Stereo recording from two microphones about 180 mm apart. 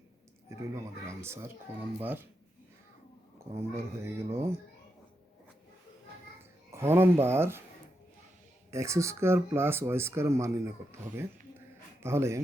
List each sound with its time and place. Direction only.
0.5 s speech: 15° right (ahead or behind)
3.5 s speech: 15° right (ahead or behind)
6.7 s speech: 15° right (ahead or behind)
8.7 s speech: 15° right (ahead or behind)
12.0 s speech: 15° right (ahead or behind)